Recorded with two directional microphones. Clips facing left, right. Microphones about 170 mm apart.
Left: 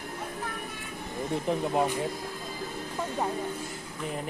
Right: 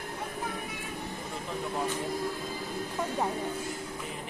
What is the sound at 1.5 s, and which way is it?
Speech, 60° left (ahead or behind).